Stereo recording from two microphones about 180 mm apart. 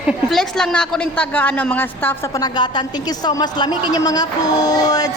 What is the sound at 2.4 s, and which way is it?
A woman's voice, 25° left (ahead or behind).